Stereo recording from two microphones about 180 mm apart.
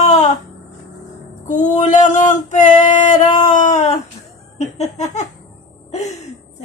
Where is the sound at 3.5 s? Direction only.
40° left (ahead or behind).